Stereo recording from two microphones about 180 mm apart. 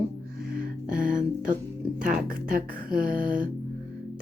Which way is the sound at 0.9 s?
5° right (ahead or behind).